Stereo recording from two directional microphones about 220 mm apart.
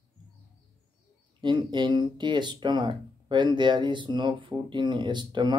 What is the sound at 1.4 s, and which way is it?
Speech, 20° right (ahead or behind).